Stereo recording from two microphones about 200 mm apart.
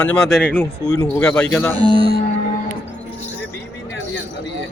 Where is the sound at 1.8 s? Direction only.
25° right (ahead or behind).